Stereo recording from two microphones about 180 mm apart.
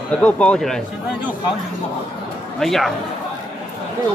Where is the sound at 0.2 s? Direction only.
5° left (ahead or behind).